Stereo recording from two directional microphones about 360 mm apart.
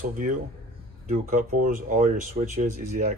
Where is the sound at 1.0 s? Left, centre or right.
Right.